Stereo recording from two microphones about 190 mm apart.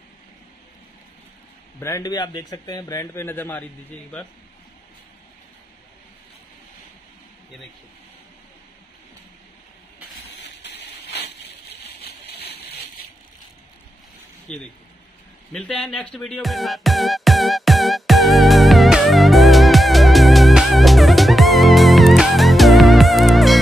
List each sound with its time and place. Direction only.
1.8 s a man's voice: 15° left (ahead or behind)
10.6 s a sound: 60° left (ahead or behind)
14.5 s speech: 5° left (ahead or behind)
15.5 s music: 5° left (ahead or behind)